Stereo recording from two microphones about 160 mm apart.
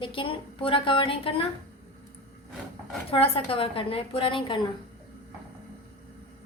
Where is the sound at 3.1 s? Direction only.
35° left (ahead or behind).